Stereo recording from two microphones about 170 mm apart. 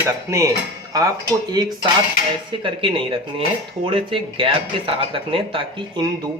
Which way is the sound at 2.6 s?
30° right (ahead or behind).